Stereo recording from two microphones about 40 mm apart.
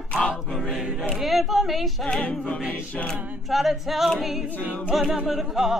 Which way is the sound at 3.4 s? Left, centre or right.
Centre.